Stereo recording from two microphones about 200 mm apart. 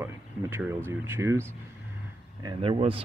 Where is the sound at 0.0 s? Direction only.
15° right (ahead or behind).